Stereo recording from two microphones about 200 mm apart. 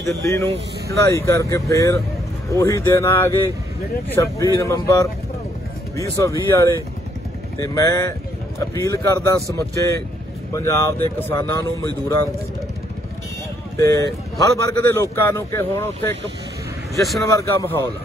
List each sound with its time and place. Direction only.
0.2 s speech: 15° left (ahead or behind)
13.7 s speech: 15° left (ahead or behind)
17.2 s speech: 15° left (ahead or behind)